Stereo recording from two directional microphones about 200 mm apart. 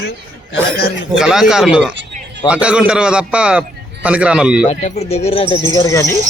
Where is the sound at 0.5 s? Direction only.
50° left (ahead or behind).